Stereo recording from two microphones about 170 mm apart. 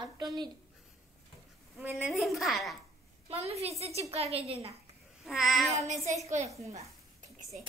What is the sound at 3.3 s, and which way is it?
A woman's voice, 35° right (ahead or behind).